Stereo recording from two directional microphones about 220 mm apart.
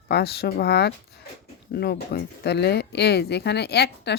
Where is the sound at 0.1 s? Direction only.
45° left (ahead or behind).